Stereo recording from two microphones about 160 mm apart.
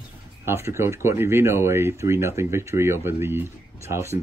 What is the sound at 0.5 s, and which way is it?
A woman's voice, 15° right (ahead or behind).